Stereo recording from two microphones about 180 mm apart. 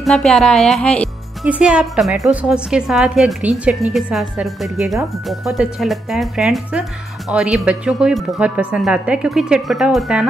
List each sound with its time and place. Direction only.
0.0 s speech: 5° left (ahead or behind)
1.5 s speech: 5° right (ahead or behind)